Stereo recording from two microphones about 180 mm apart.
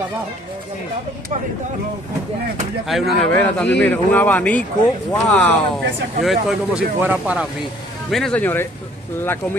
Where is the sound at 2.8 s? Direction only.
Centre (ahead or behind).